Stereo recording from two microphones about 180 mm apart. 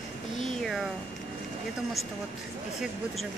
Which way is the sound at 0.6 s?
Centre (ahead or behind).